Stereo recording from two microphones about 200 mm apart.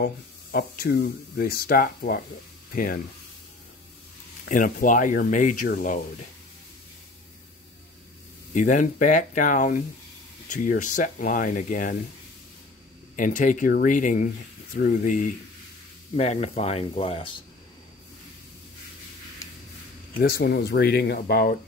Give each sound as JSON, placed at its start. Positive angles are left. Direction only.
{"t": 0.0, "sound": "speech", "side_deg": 50}
{"t": 4.5, "sound": "speech", "side_deg": 45}
{"t": 8.5, "sound": "speech", "side_deg": 40}
{"t": 13.1, "sound": "speech", "side_deg": 40}
{"t": 20.2, "sound": "speech", "side_deg": 50}